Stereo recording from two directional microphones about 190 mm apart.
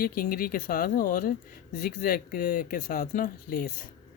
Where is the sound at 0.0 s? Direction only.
50° left (ahead or behind).